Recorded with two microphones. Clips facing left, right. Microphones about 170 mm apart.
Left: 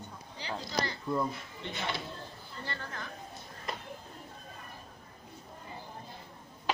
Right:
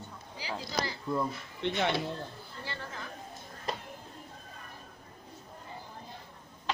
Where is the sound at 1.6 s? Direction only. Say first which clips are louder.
Right 8 dB; 65° right (ahead or behind).